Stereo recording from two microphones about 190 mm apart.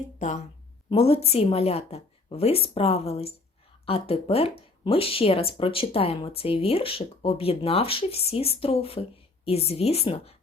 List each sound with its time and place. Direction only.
0.2 s speech: 40° left (ahead or behind)